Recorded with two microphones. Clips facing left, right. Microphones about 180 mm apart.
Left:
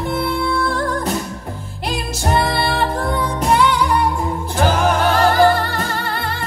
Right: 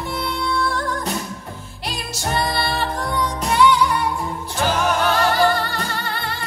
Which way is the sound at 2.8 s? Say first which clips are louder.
Left 4 dB; 55° left (ahead or behind).